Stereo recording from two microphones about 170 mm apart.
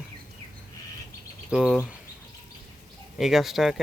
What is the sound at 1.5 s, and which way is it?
Speech, 5° right (ahead or behind).